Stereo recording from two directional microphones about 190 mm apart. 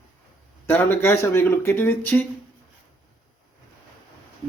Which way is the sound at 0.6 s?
10° left (ahead or behind).